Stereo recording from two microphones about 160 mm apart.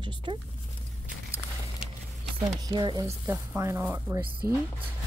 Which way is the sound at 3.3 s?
15° right (ahead or behind).